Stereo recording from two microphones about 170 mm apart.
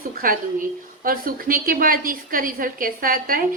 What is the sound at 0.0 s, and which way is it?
A woman's voice, 55° right (ahead or behind).